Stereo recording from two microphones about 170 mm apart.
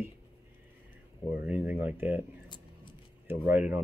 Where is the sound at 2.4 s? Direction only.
25° left (ahead or behind).